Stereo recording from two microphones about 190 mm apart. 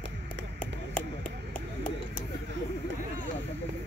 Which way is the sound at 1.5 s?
45° left (ahead or behind).